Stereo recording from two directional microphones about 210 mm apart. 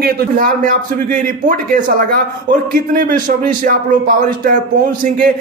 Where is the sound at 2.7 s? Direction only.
45° right (ahead or behind).